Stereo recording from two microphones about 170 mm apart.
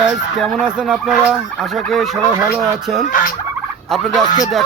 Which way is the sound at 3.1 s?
55° left (ahead or behind).